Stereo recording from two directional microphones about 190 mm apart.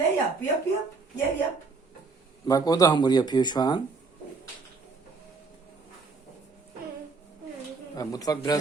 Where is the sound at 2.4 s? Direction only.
20° left (ahead or behind).